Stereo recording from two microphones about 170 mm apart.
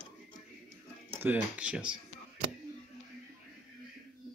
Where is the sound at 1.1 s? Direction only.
10° right (ahead or behind).